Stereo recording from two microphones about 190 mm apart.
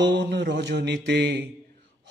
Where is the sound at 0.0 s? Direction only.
65° right (ahead or behind).